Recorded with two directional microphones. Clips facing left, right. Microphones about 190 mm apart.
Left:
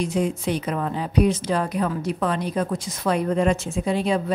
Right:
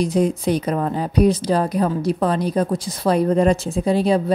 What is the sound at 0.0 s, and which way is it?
A woman's voice, 40° right (ahead or behind).